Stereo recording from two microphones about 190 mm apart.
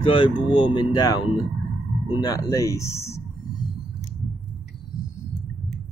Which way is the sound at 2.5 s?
15° left (ahead or behind).